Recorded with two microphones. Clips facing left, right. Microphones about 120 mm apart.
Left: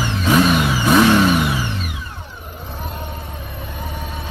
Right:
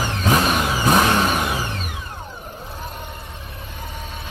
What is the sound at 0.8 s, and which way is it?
Vehicle, 30° right (ahead or behind).